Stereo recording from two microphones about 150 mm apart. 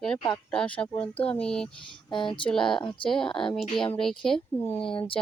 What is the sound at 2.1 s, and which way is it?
Speech, 35° left (ahead or behind).